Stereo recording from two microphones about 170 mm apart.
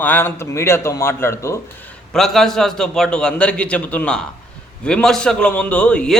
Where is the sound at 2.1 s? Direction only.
Centre (ahead or behind).